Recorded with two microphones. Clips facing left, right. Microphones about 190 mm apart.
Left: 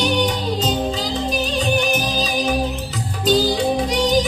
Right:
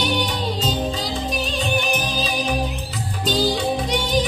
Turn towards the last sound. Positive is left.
turn(degrees=40)  # may be behind; listen again after turning